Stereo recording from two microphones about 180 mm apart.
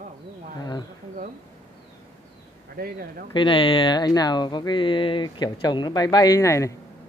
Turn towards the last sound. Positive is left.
turn(degrees=15)  # may be behind; listen again after turning